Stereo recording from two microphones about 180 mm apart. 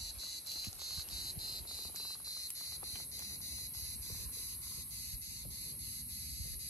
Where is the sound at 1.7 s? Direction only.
20° left (ahead or behind).